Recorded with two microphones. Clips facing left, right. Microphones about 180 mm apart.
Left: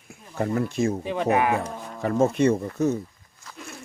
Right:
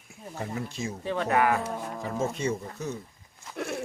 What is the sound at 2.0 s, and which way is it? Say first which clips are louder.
Speech: left 11 dB; 65° left (ahead or behind).